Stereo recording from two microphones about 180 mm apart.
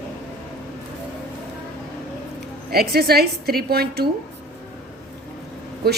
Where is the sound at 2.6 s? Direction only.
60° right (ahead or behind).